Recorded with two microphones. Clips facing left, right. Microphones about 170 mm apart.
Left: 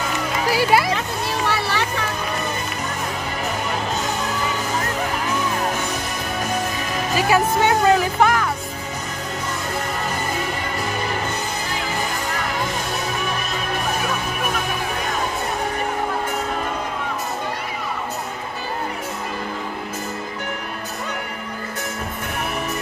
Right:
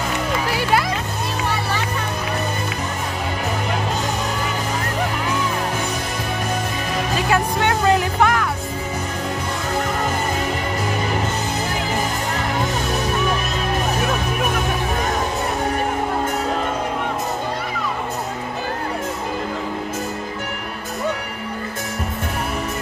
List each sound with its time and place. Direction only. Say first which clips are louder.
0.5 s music: left 4 dB; 5° left (ahead or behind)
7.2 s music: left 3 dB; 5° left (ahead or behind)